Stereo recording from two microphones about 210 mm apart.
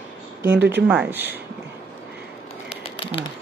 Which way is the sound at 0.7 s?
10° right (ahead or behind).